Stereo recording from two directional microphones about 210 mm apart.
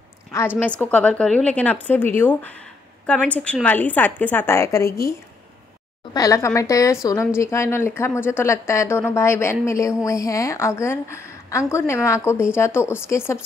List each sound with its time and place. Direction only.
0.6 s speech: 5° left (ahead or behind)
6.1 s speech: 15° left (ahead or behind)